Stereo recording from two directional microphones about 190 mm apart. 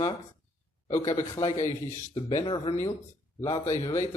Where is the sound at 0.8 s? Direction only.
35° left (ahead or behind).